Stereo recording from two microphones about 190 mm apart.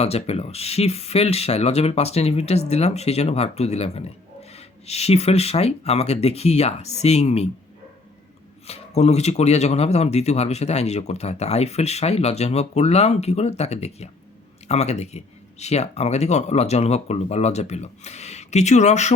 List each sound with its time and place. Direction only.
0.0 s speech: 35° left (ahead or behind)
8.6 s speech: 35° left (ahead or behind)